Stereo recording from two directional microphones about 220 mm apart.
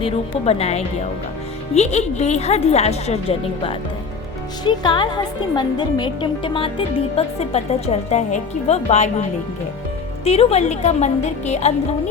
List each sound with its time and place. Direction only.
0.0 s speech: 30° left (ahead or behind)
10.2 s a woman's voice: 30° left (ahead or behind)